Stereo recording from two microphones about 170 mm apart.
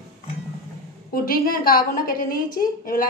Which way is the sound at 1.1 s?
55° left (ahead or behind).